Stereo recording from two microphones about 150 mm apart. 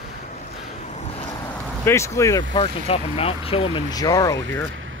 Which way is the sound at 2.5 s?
40° left (ahead or behind).